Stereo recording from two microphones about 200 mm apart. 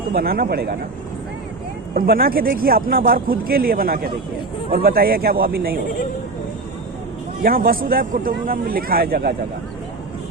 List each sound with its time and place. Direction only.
0.1 s speech: 50° right (ahead or behind)
2.0 s speech: 50° right (ahead or behind)
7.4 s speech: 45° right (ahead or behind)